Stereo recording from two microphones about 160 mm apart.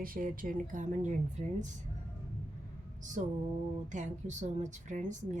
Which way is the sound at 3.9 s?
50° right (ahead or behind).